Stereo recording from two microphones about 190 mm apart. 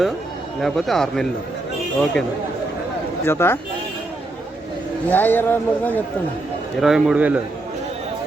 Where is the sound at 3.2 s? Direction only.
10° left (ahead or behind).